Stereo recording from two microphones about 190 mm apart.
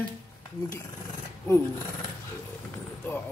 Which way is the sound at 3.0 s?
10° left (ahead or behind).